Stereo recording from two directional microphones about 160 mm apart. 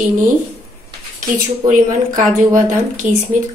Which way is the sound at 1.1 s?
55° right (ahead or behind).